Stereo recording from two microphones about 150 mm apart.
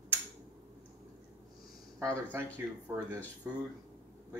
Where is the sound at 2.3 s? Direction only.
15° right (ahead or behind).